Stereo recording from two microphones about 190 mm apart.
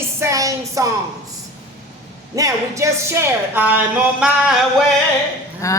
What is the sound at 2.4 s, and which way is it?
Speech, 15° right (ahead or behind).